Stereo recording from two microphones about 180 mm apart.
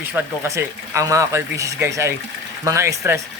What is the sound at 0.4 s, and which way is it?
Speech, 15° right (ahead or behind).